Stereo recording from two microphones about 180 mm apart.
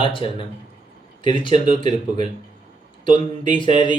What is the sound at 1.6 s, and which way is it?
Speech, 40° right (ahead or behind).